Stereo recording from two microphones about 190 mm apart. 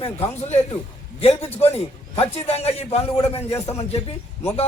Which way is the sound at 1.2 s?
30° left (ahead or behind).